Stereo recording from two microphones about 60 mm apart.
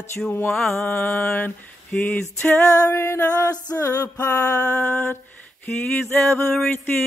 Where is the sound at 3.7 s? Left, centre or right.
Left.